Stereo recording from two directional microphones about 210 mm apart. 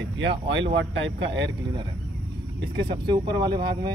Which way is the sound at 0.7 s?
60° right (ahead or behind).